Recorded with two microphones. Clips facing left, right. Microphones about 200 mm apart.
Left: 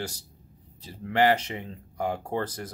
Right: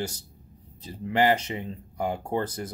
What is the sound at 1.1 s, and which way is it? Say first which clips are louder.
Speech: even; 15° right (ahead or behind).